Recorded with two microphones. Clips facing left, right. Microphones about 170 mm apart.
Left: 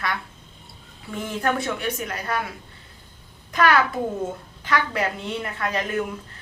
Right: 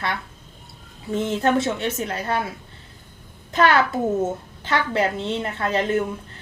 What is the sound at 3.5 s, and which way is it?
A woman's voice, 25° right (ahead or behind).